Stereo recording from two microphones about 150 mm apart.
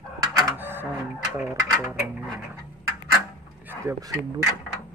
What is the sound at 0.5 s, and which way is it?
Printer, 15° right (ahead or behind).